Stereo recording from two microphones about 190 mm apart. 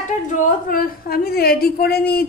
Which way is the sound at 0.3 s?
45° left (ahead or behind).